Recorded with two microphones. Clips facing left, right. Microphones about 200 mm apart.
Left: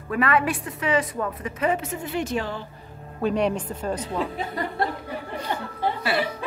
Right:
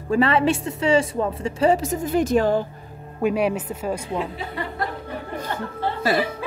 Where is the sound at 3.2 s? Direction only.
10° right (ahead or behind).